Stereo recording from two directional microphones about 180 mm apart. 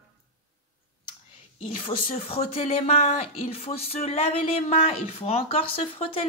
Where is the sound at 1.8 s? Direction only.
30° left (ahead or behind).